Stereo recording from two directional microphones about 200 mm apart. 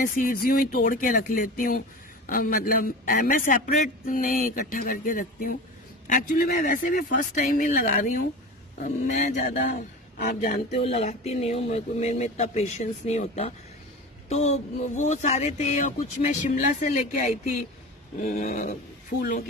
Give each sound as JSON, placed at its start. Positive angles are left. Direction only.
{"t": 0.0, "sound": "a man's voice", "side_deg": 45}
{"t": 9.7, "sound": "speech", "side_deg": 50}
{"t": 10.7, "sound": "speech", "side_deg": 30}
{"t": 18.3, "sound": "a man's voice", "side_deg": 45}